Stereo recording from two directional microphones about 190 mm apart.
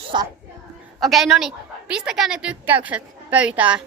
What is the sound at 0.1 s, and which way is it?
Speech, 25° right (ahead or behind).